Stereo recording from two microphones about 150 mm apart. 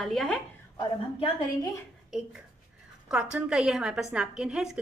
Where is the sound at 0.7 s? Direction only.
30° left (ahead or behind).